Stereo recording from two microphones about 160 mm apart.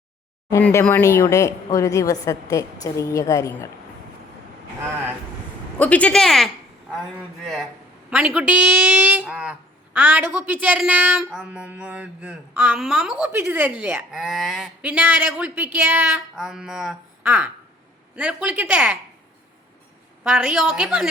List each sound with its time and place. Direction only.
0.5 s a woman's voice: 20° left (ahead or behind)
5.8 s a woman's voice: 10° left (ahead or behind)
8.1 s a woman's voice: 5° right (ahead or behind)
20.2 s a woman's voice: 5° right (ahead or behind)